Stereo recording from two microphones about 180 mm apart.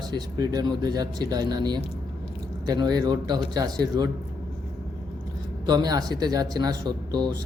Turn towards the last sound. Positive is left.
turn(degrees=-25)  # may be behind; listen again after turning